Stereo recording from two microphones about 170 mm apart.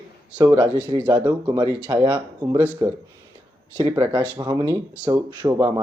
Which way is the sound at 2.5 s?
15° right (ahead or behind).